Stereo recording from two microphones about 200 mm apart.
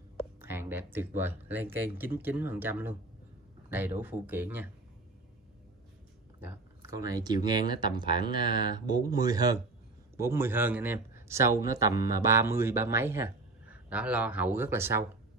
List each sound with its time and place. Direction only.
0.2 s a man's voice: 10° right (ahead or behind)
6.4 s a man's voice: 15° right (ahead or behind)